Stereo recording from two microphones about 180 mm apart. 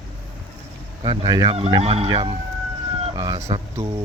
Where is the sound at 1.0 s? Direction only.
30° right (ahead or behind).